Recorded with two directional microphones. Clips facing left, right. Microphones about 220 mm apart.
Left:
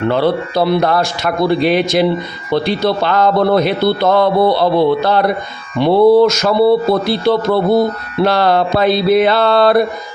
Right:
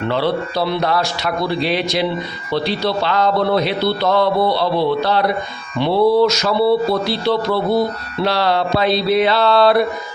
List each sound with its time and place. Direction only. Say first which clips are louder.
0.1 s speech: left 3 dB; 50° left (ahead or behind)